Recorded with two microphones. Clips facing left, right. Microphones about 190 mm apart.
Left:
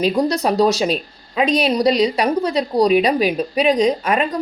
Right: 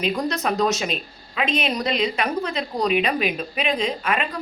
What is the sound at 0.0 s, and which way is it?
Speech, 35° left (ahead or behind).